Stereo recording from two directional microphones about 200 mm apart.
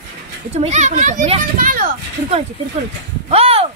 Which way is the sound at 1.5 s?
45° right (ahead or behind).